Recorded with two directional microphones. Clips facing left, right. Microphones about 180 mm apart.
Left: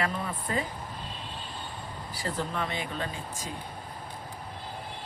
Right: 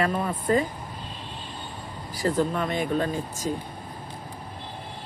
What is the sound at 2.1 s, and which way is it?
Speech, 45° right (ahead or behind).